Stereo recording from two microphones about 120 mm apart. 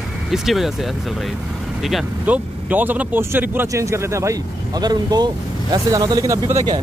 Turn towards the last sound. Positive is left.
turn(degrees=-30)  # may be behind; listen again after turning